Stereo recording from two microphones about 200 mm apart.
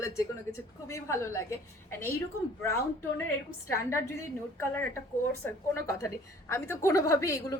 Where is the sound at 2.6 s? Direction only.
15° left (ahead or behind).